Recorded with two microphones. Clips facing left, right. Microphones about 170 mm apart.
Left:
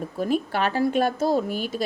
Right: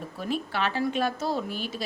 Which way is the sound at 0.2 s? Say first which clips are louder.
Left 5 dB; 45° left (ahead or behind).